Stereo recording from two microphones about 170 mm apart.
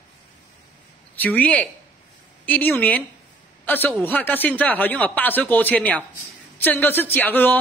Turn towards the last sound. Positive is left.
turn(degrees=10)  # may be behind; listen again after turning